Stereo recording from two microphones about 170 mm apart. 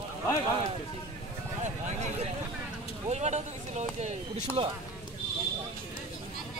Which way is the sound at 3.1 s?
40° right (ahead or behind).